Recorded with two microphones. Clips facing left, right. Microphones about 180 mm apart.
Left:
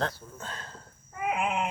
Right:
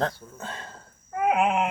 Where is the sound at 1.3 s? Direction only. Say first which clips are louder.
Right 7 dB; 65° right (ahead or behind).